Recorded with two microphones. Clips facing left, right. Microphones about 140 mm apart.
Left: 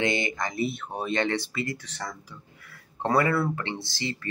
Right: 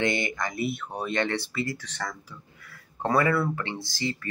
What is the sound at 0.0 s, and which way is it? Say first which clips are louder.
Speech: even; 20° left (ahead or behind).